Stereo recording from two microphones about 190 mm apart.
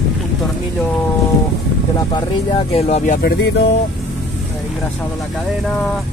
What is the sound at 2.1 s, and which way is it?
Speech, 30° left (ahead or behind).